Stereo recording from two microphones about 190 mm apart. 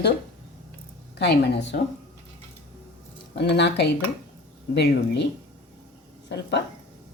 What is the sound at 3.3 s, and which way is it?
Speech, 65° left (ahead or behind).